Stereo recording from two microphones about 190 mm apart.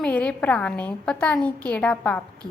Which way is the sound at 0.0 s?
5° left (ahead or behind).